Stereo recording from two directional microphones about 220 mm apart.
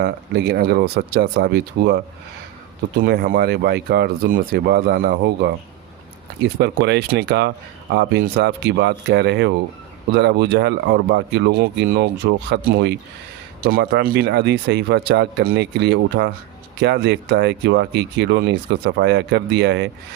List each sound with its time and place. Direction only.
0.0 s speech: 50° right (ahead or behind)
3.0 s speech: 40° right (ahead or behind)